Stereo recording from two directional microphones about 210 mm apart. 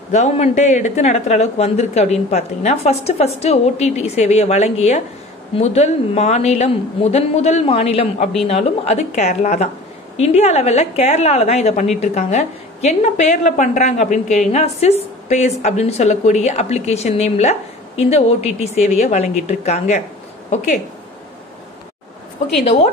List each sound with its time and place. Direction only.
0.1 s speech: 35° left (ahead or behind)